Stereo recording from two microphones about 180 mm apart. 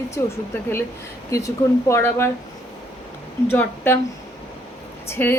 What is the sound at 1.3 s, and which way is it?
A woman's voice, 15° left (ahead or behind).